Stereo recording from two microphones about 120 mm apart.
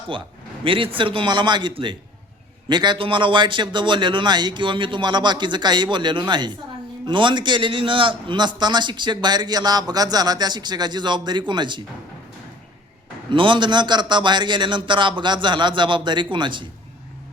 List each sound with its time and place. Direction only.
0.6 s a man's voice: 45° right (ahead or behind)
13.3 s a man's voice: 45° right (ahead or behind)